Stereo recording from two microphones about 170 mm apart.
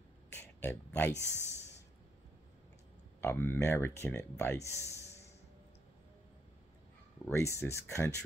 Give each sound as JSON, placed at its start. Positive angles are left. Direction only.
{"t": 0.4, "sound": "speech", "side_deg": 10}
{"t": 1.1, "sound": "speech", "side_deg": -15}
{"t": 3.2, "sound": "speech", "side_deg": 10}
{"t": 7.2, "sound": "speech", "side_deg": 15}